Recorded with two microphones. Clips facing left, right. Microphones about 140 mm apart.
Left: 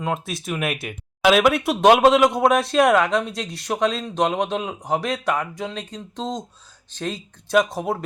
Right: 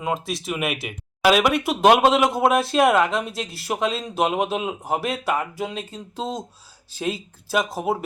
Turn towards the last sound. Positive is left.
turn(degrees=-5)  # may be behind; listen again after turning